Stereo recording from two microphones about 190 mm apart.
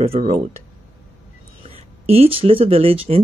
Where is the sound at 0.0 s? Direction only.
35° right (ahead or behind).